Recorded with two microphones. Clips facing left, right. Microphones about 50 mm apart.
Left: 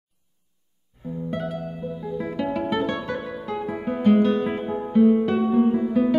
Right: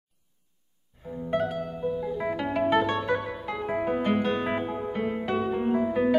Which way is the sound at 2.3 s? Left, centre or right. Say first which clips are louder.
Left 2 dB; centre.